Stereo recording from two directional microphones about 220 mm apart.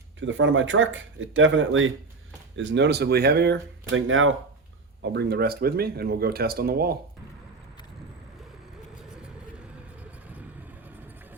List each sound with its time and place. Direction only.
0.2 s speech: 60° right (ahead or behind)
5.0 s speech: 50° right (ahead or behind)
9.0 s vehicle: 5° right (ahead or behind)